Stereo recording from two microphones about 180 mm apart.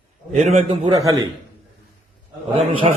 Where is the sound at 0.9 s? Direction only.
20° right (ahead or behind).